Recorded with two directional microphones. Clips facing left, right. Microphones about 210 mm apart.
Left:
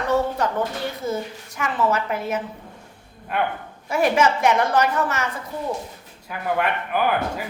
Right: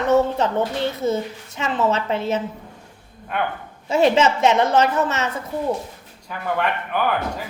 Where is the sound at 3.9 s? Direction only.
25° right (ahead or behind).